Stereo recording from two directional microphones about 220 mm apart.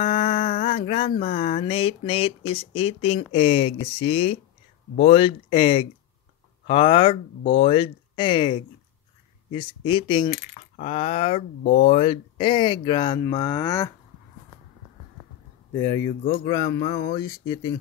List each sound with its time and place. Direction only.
0.0 s speech: 25° left (ahead or behind)
15.7 s speech: 15° left (ahead or behind)